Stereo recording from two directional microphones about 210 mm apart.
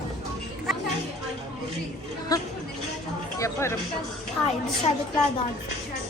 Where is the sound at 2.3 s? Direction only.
20° left (ahead or behind).